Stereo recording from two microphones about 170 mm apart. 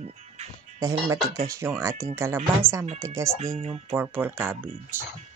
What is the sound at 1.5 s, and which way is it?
Speech, 15° right (ahead or behind).